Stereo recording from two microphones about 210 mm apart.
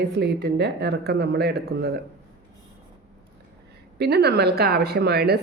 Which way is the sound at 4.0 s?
50° right (ahead or behind).